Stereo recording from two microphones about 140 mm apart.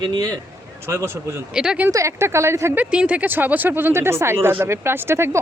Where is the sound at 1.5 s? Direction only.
5° right (ahead or behind).